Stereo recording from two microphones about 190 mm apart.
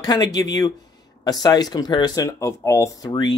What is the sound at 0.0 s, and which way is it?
Speech, 20° left (ahead or behind).